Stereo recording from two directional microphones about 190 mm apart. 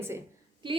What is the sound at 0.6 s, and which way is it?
Speech, 25° right (ahead or behind).